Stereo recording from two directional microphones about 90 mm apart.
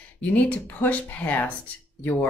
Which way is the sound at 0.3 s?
20° left (ahead or behind).